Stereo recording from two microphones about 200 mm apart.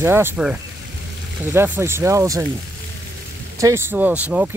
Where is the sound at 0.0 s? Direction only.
10° right (ahead or behind).